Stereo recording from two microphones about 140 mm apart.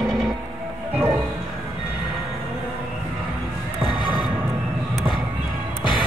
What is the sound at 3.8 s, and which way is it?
Basketball bounce, 35° left (ahead or behind).